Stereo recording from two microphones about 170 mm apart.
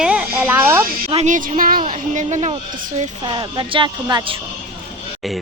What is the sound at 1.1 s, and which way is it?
A woman's voice, 40° right (ahead or behind).